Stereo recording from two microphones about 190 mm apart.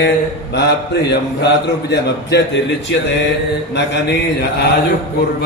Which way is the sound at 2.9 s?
65° left (ahead or behind).